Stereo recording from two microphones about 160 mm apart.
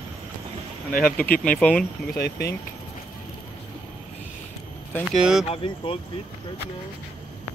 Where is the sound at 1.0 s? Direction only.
10° left (ahead or behind).